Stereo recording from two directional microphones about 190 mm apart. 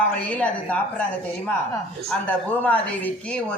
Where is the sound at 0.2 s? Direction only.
5° left (ahead or behind).